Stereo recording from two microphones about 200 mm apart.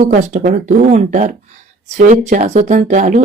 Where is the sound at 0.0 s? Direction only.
40° right (ahead or behind).